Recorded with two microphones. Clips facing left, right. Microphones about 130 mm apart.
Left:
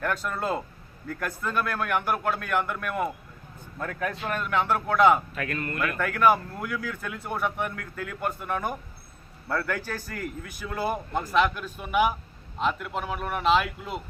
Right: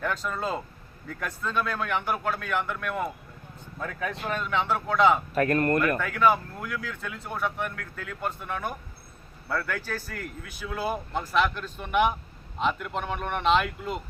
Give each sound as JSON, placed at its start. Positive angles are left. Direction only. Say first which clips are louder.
{"t": 0.0, "sound": "a man's voice", "louder": "left 1 dB", "side_deg": 5}
{"t": 5.3, "sound": "speech", "louder": "right 9 dB", "side_deg": -45}
{"t": 6.0, "sound": "a man's voice", "louder": "left 1 dB", "side_deg": 5}